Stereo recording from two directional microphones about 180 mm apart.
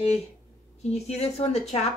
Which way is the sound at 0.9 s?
35° left (ahead or behind).